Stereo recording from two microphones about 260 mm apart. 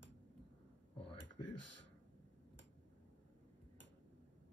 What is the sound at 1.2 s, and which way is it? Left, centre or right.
Speech, left.